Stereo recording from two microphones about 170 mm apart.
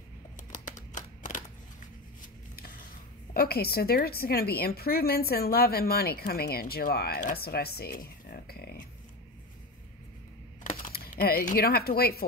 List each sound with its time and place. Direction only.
0.9 s a sound: 50° left (ahead or behind)
3.3 s a woman's voice: 65° left (ahead or behind)
7.2 s speech: 55° left (ahead or behind)
10.6 s speech: 50° left (ahead or behind)